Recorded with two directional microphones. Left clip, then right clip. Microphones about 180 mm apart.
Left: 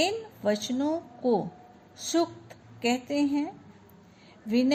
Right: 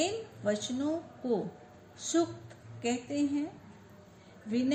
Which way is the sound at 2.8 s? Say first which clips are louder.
Left 5 dB; 45° left (ahead or behind).